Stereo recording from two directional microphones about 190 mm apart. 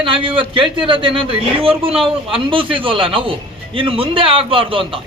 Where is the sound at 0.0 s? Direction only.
30° right (ahead or behind).